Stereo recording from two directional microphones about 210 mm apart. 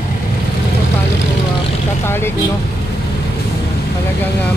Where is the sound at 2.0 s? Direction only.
10° left (ahead or behind).